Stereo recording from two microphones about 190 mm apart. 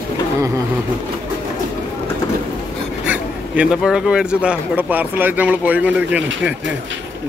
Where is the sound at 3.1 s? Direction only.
5° right (ahead or behind).